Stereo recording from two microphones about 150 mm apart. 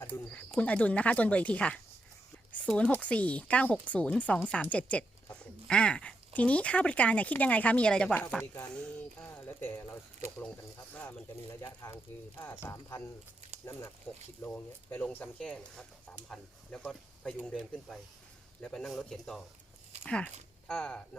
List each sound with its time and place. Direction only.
0.0 s speech: 10° left (ahead or behind)
11.6 s speech: 20° left (ahead or behind)